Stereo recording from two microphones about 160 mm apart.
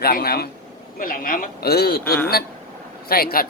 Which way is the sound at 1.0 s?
60° left (ahead or behind).